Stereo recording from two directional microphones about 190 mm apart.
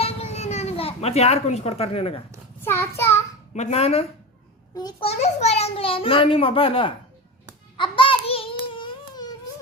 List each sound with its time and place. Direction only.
0.0 s a sound: 35° left (ahead or behind)
2.6 s child singing: 10° left (ahead or behind)
3.5 s speech: 35° left (ahead or behind)
4.7 s a child's voice: 20° left (ahead or behind)
5.0 s a child's voice: 35° left (ahead or behind)
7.8 s baby cry: 25° left (ahead or behind)